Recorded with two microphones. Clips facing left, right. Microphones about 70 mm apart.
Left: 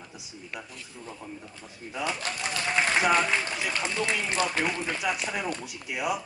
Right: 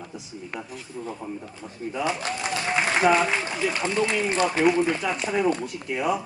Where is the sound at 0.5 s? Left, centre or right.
Right.